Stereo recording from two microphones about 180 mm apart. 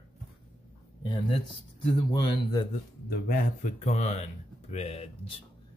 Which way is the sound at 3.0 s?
50° left (ahead or behind).